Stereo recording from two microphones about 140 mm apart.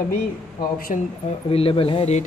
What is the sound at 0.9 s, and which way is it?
Speech, 60° left (ahead or behind).